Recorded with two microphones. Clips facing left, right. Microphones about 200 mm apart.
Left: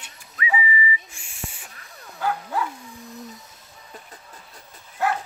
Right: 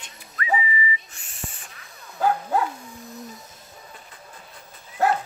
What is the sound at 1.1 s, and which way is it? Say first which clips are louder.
Owl: left 1 dB; 10° left (ahead or behind).